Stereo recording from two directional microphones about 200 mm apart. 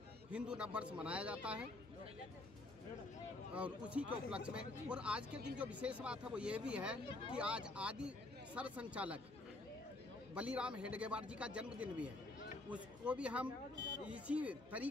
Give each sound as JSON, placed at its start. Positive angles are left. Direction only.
{"t": 0.3, "sound": "speech", "side_deg": -5}
{"t": 3.5, "sound": "speech", "side_deg": -5}
{"t": 10.3, "sound": "speech", "side_deg": -5}
{"t": 13.7, "sound": "speech", "side_deg": -65}
{"t": 14.0, "sound": "speech", "side_deg": -5}